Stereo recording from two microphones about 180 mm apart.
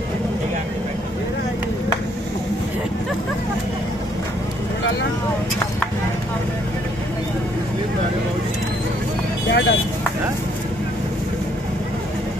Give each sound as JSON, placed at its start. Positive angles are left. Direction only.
{"t": 9.5, "sound": "vehicle", "side_deg": 75}